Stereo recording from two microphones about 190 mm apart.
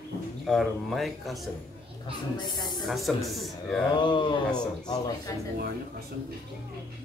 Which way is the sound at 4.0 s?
25° left (ahead or behind).